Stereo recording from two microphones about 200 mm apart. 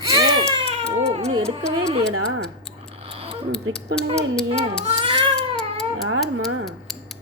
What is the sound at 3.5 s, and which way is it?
A child's voice, 5° left (ahead or behind).